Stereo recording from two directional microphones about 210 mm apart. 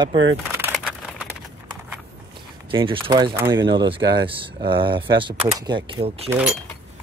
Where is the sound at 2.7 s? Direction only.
25° right (ahead or behind).